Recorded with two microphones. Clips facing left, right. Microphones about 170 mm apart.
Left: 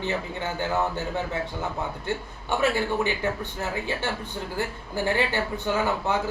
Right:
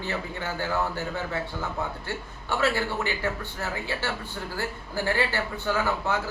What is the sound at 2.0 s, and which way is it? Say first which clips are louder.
A man's voice: left 4 dB; 15° left (ahead or behind).